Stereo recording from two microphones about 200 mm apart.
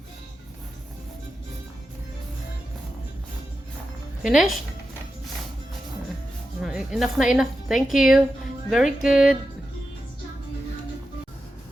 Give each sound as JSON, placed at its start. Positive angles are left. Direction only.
{"t": 4.2, "sound": "a woman's voice", "side_deg": 0}
{"t": 6.6, "sound": "a woman's voice", "side_deg": -5}